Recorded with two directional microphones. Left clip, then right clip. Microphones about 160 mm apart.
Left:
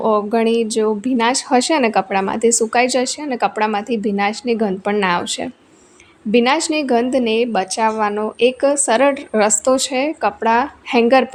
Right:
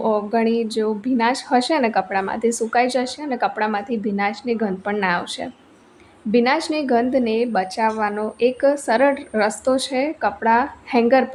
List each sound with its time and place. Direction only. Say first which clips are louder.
0.0 s speech: left 4 dB; 30° left (ahead or behind)